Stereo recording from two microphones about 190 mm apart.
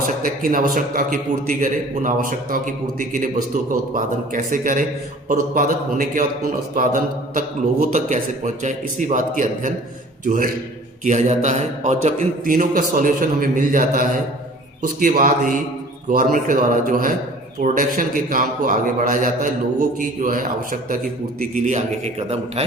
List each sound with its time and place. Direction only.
0.2 s a man's voice: 45° right (ahead or behind)